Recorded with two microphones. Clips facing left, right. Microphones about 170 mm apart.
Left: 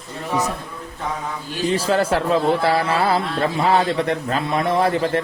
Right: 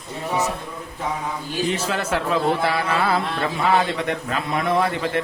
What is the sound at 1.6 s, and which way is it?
Speech, 35° left (ahead or behind).